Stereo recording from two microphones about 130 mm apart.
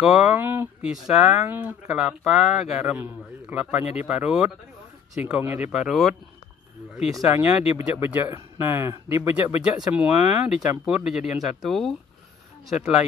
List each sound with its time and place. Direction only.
0.0 s speech: 5° right (ahead or behind)
5.7 s speech: 5° right (ahead or behind)
7.3 s speech: 15° right (ahead or behind)